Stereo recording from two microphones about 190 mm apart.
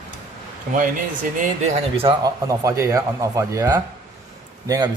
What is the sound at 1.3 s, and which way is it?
Speech, 40° right (ahead or behind).